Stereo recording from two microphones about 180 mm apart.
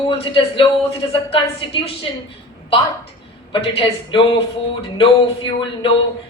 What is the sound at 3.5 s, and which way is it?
A woman's voice, 30° left (ahead or behind).